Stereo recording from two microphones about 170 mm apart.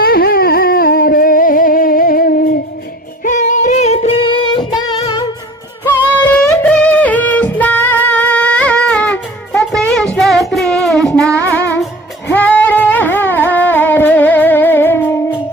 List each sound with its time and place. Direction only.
0.0 s a sound: 60° left (ahead or behind)
3.2 s music: 45° left (ahead or behind); by 5.3 s 25° left (ahead or behind)
6.2 s music: 10° left (ahead or behind)